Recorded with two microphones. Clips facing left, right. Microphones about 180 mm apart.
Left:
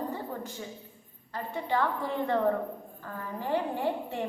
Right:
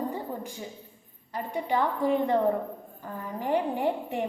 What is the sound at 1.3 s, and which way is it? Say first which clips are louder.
A woman's voice: right 2 dB; 15° right (ahead or behind).